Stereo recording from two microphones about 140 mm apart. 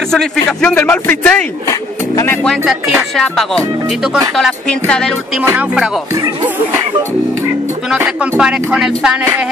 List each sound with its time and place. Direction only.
0.1 s speech: 5° left (ahead or behind)
2.4 s speech: centre (ahead or behind)
5.4 s speech: 20° right (ahead or behind)
7.9 s speech: 5° right (ahead or behind)